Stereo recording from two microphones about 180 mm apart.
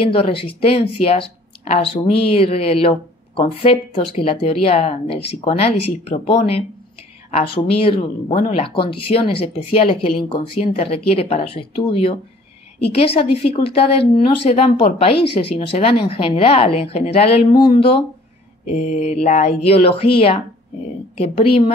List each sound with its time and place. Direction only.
0.0 s speech: 30° left (ahead or behind)
21.2 s speech: 30° left (ahead or behind)